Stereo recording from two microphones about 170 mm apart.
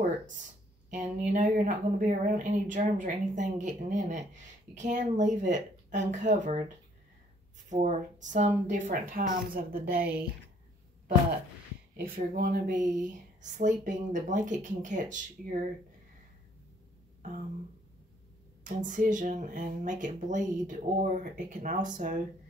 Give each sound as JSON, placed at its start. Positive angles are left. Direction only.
{"t": 0.8, "sound": "speech", "side_deg": -45}
{"t": 7.7, "sound": "speech", "side_deg": -45}
{"t": 12.0, "sound": "speech", "side_deg": -60}
{"t": 18.8, "sound": "speech", "side_deg": -50}